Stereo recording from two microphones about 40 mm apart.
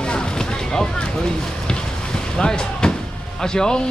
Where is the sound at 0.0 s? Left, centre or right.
Left.